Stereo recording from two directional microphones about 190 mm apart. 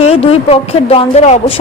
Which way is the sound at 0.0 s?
30° left (ahead or behind).